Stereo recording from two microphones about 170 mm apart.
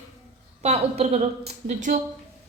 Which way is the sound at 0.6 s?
40° right (ahead or behind).